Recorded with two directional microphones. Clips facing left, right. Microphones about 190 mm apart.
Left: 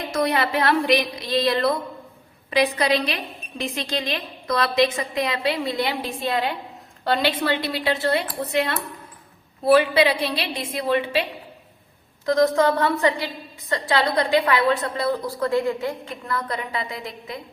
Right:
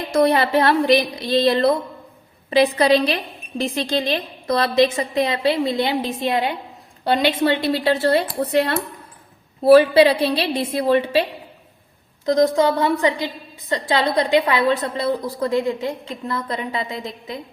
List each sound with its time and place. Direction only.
0.1 s a woman's voice: 30° right (ahead or behind)
7.5 s a woman's voice: 30° right (ahead or behind)
12.2 s a woman's voice: 20° right (ahead or behind)